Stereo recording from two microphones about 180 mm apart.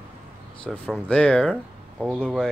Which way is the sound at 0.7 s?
5° left (ahead or behind).